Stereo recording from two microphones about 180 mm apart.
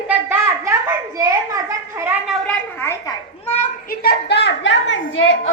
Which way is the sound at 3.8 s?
60° left (ahead or behind).